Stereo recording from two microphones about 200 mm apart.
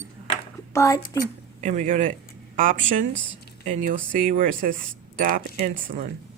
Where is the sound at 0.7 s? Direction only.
15° left (ahead or behind).